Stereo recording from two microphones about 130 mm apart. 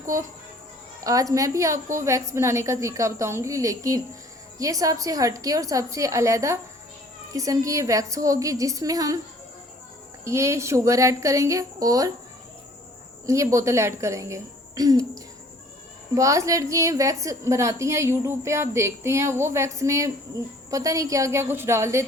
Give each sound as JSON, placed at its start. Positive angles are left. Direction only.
{"t": 1.0, "sound": "a woman's voice", "side_deg": -25}
{"t": 10.2, "sound": "a woman's voice", "side_deg": -20}
{"t": 13.2, "sound": "a woman's voice", "side_deg": -25}
{"t": 16.1, "sound": "a woman's voice", "side_deg": -25}